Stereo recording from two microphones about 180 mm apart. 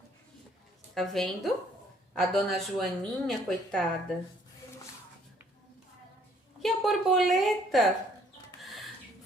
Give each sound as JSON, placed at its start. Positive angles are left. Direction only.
{"t": 0.9, "sound": "a woman's voice", "side_deg": 0}
{"t": 6.6, "sound": "a woman's voice", "side_deg": 0}